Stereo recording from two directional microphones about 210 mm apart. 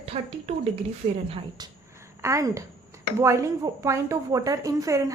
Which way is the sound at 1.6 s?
20° right (ahead or behind).